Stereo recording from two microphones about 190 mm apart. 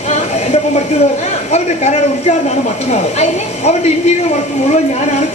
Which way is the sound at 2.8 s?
35° left (ahead or behind).